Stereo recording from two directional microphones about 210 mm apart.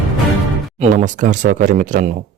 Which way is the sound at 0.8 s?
35° right (ahead or behind).